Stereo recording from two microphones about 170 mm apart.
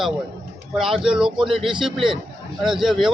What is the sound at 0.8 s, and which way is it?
A man's voice, 5° right (ahead or behind).